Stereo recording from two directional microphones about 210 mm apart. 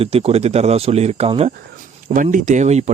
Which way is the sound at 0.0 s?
30° right (ahead or behind).